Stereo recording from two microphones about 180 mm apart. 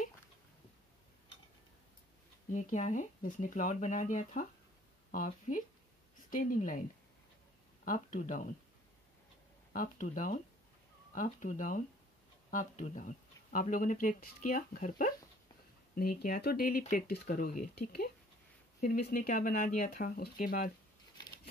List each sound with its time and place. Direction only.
2.5 s speech: 40° left (ahead or behind)
7.8 s speech: 45° left (ahead or behind)
9.7 s speech: 45° left (ahead or behind)